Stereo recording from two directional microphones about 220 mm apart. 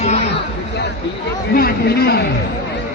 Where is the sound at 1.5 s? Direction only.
45° left (ahead or behind).